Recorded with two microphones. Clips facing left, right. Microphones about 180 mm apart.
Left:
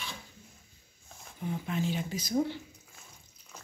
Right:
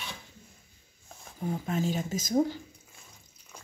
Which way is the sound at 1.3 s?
40° right (ahead or behind).